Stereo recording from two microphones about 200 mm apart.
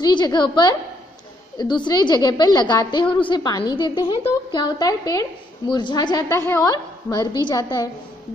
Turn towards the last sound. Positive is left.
turn(degrees=20)  # may be behind; listen again after turning